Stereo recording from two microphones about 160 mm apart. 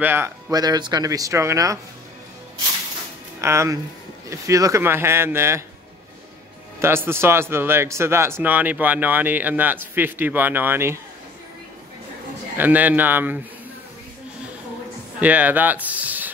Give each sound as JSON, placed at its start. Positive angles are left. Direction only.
{"t": 0.0, "sound": "speech", "side_deg": -15}
{"t": 0.5, "sound": "speech", "side_deg": -25}
{"t": 3.3, "sound": "speech", "side_deg": -20}
{"t": 6.8, "sound": "speech", "side_deg": -15}
{"t": 12.5, "sound": "speech", "side_deg": -10}
{"t": 15.1, "sound": "speech", "side_deg": -10}